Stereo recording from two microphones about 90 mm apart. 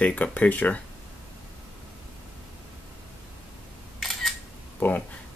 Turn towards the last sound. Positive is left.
turn(degrees=20)  # may be behind; listen again after turning